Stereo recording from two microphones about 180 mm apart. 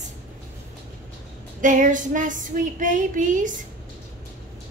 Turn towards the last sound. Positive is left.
turn(degrees=-45)  # may be behind; listen again after turning